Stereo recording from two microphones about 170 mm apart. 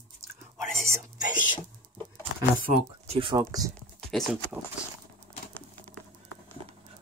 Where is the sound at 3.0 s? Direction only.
35° right (ahead or behind).